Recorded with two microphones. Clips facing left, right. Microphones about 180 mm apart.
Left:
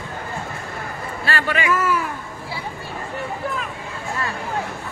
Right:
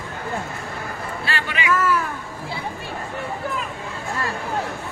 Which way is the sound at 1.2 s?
45° left (ahead or behind).